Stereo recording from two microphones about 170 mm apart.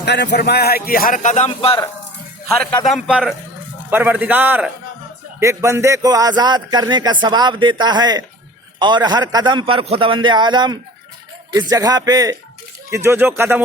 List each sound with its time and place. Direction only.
0.0 s speech: 85° left; by 1.5 s 45° left (ahead or behind)
1.5 s a man's voice: 30° left (ahead or behind)
2.8 s a man's voice: centre (ahead or behind)